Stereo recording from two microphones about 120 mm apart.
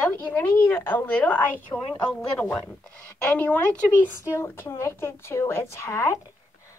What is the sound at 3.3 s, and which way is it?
A woman's voice, 10° left (ahead or behind).